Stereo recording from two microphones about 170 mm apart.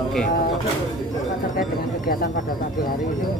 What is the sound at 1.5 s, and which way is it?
Speech, 55° left (ahead or behind).